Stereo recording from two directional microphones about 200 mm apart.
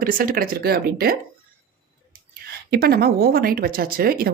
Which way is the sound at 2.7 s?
50° right (ahead or behind).